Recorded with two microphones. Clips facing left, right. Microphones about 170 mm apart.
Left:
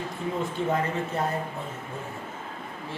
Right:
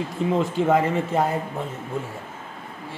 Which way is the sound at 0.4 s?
90° right.